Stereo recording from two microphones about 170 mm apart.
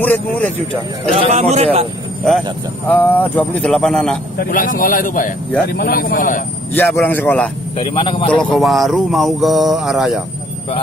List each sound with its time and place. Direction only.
0.0 s a man's voice: 10° left (ahead or behind)
1.1 s a man's voice: 40° right (ahead or behind)
2.9 s a man's voice: 10° left (ahead or behind)
4.4 s a man's voice: 55° left (ahead or behind)
5.7 s a man's voice: 60° left (ahead or behind)
6.7 s a man's voice: 10° left (ahead or behind)
7.8 s a man's voice: 30° left (ahead or behind)
8.3 s speech: 5° left (ahead or behind)